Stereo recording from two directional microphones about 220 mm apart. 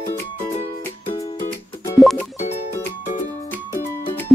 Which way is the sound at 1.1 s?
25° left (ahead or behind).